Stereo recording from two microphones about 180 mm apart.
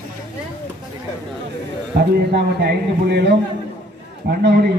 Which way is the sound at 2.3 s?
65° right (ahead or behind).